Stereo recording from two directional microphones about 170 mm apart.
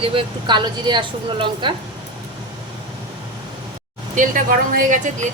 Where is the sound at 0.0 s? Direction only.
30° right (ahead or behind).